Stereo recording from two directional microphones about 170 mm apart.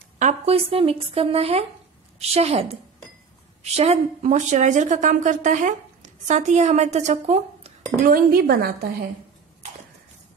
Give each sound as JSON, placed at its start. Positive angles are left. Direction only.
{"t": 0.2, "sound": "a woman's voice", "side_deg": -40}
{"t": 8.0, "sound": "speech", "side_deg": -60}